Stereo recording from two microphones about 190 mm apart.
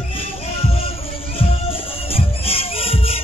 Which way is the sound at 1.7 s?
30° left (ahead or behind).